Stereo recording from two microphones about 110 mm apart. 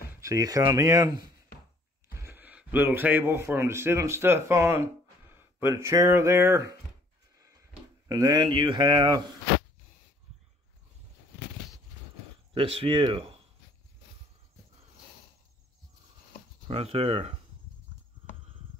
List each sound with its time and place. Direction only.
0.2 s speech: 30° right (ahead or behind)
2.2 s speech: 15° right (ahead or behind)
8.1 s speech: 40° right (ahead or behind)
12.5 s speech: 60° right (ahead or behind)
16.6 s speech: 65° right (ahead or behind)